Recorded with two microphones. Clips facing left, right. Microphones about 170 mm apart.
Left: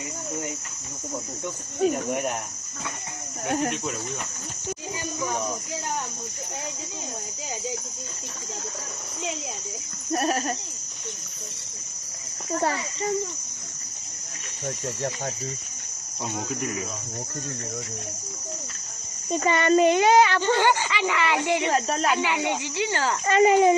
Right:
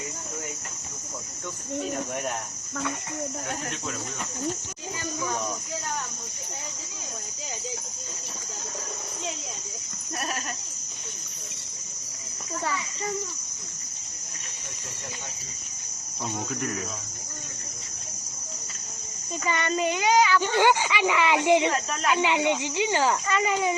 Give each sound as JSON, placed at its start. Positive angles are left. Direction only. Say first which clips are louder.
{"t": 10.1, "sound": "speech", "louder": "left 9 dB", "side_deg": 40}
{"t": 12.5, "sound": "a child's voice", "louder": "left 5 dB", "side_deg": 45}
{"t": 16.2, "sound": "speech", "louder": "left 1 dB", "side_deg": 0}
{"t": 19.3, "sound": "speech", "louder": "left 7 dB", "side_deg": 40}
{"t": 20.4, "sound": "speech", "louder": "even", "side_deg": -15}
{"t": 21.7, "sound": "speech", "louder": "left 3 dB", "side_deg": 35}
{"t": 22.2, "sound": "speech", "louder": "right 2 dB", "side_deg": -20}
{"t": 23.2, "sound": "speech", "louder": "left 8 dB", "side_deg": 40}